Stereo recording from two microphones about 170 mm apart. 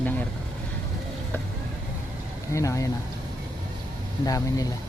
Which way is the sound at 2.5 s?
20° left (ahead or behind).